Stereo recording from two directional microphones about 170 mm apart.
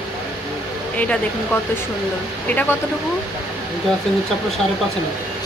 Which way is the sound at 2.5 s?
10° left (ahead or behind).